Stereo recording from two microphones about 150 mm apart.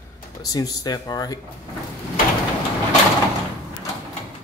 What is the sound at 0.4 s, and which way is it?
Speech, 25° left (ahead or behind).